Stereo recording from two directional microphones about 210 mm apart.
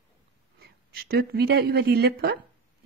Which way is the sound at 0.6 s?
50° right (ahead or behind).